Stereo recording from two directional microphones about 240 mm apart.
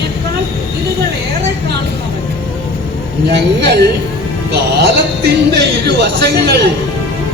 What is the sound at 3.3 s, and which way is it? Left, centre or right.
A woman's voice, right.